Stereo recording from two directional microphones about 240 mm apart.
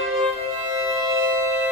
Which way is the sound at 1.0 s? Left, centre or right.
Centre.